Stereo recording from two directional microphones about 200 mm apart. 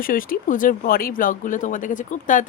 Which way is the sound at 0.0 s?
45° left (ahead or behind).